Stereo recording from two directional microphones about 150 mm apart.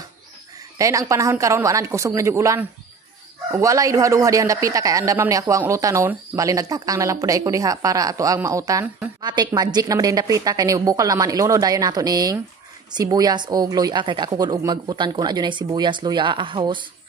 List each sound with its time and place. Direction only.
0.7 s speech: 20° right (ahead or behind)